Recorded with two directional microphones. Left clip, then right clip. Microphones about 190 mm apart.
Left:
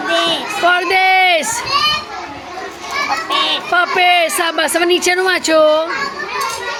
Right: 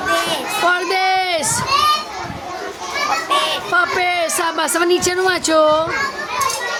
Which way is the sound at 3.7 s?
Centre (ahead or behind).